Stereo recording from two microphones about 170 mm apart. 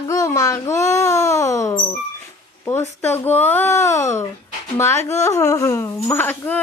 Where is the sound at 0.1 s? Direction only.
20° left (ahead or behind).